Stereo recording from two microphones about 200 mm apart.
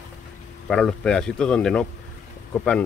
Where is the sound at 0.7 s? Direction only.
5° left (ahead or behind).